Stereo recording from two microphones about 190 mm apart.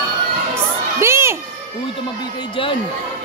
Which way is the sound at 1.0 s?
15° right (ahead or behind).